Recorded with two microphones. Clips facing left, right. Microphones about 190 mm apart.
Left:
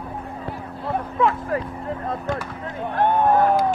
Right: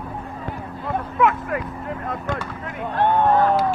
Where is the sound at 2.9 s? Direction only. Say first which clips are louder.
Even; 10° left (ahead or behind).